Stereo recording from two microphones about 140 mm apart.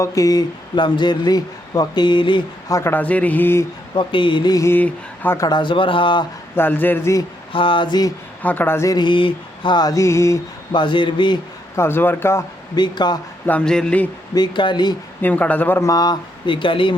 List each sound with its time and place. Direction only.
0.0 s speech: 25° left (ahead or behind)
2.7 s speech: 15° left (ahead or behind)
3.9 s mantra: 35° left (ahead or behind); by 5.4 s 15° left (ahead or behind)
5.4 s speech: 30° left (ahead or behind)
6.6 s speech: 15° left (ahead or behind)
7.5 s speech: 35° left (ahead or behind)
8.4 s mantra: 10° left (ahead or behind)
10.7 s speech: 35° left (ahead or behind)
11.8 s speech: 15° left (ahead or behind)
12.7 s speech: 30° left (ahead or behind)
13.5 s speech: 5° left (ahead or behind)
14.3 s speech: 30° left (ahead or behind)
15.2 s mantra: 10° left (ahead or behind); by 16.9 s 35° left (ahead or behind)